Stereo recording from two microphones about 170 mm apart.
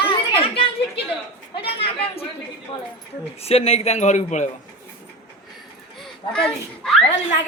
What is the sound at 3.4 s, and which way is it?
A man's voice, 35° left (ahead or behind).